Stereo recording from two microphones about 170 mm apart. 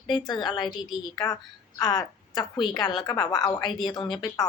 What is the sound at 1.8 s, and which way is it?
A woman's voice, 25° left (ahead or behind).